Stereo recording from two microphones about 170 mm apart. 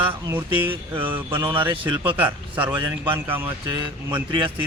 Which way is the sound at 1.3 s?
30° right (ahead or behind).